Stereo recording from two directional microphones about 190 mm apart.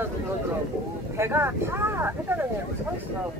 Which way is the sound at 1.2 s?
10° right (ahead or behind).